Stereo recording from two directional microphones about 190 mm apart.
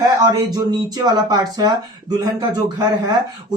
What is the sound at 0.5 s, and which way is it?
Speech, 20° right (ahead or behind).